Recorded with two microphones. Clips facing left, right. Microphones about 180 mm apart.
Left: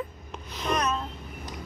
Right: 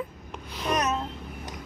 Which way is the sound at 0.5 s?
10° right (ahead or behind).